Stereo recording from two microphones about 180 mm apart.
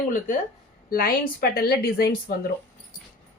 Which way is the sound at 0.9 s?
55° left (ahead or behind).